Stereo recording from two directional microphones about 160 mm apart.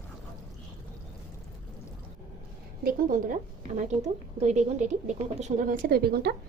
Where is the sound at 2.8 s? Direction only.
55° right (ahead or behind).